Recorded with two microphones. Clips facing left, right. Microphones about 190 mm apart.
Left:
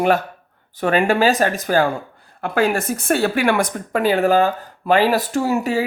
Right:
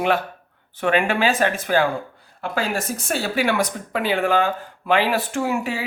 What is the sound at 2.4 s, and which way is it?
Speech, 55° left (ahead or behind).